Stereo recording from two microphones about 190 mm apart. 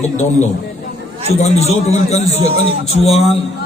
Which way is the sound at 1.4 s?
35° left (ahead or behind).